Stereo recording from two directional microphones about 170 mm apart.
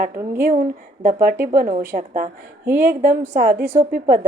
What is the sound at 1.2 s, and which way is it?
A woman's voice, 55° right (ahead or behind).